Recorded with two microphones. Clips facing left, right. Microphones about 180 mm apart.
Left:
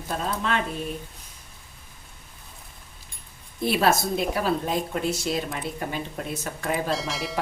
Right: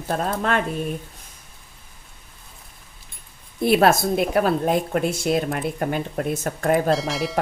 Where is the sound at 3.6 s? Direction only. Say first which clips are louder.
Right 5 dB; 55° right (ahead or behind).